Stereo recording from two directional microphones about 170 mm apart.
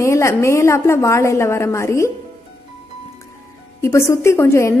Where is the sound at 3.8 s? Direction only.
15° left (ahead or behind).